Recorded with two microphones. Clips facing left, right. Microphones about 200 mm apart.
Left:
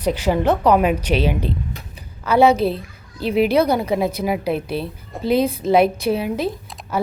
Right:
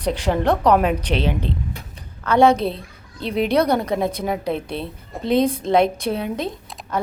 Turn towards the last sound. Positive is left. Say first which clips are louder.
# left 3 dB
turn(degrees=5)  # may be behind; listen again after turning